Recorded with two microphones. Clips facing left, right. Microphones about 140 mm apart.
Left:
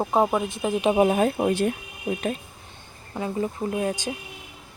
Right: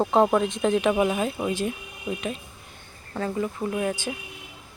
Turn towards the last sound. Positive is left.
turn(degrees=30)  # may be behind; listen again after turning